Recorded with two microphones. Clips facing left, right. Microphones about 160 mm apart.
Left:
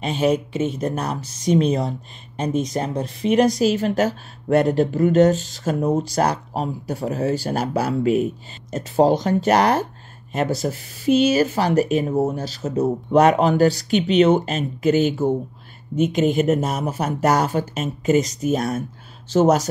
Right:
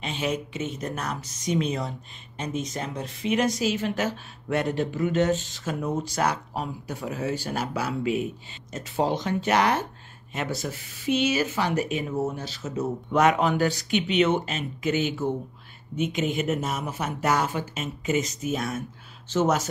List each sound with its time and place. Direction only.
0.0 s speech: 40° left (ahead or behind)